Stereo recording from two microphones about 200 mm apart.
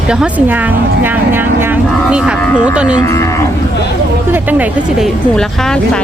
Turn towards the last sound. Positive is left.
turn(degrees=5)  # may be behind; listen again after turning